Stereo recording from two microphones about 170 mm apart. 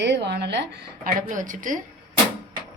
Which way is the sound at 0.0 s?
85° right.